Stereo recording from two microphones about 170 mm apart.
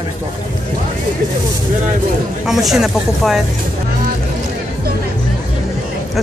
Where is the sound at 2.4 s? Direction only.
Centre (ahead or behind).